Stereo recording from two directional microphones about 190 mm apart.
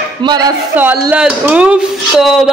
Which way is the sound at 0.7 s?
10° right (ahead or behind).